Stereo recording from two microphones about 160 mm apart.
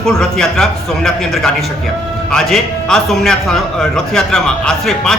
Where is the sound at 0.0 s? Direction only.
5° left (ahead or behind).